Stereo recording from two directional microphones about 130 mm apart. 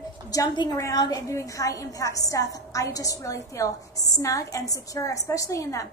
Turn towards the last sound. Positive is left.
turn(degrees=25)  # may be behind; listen again after turning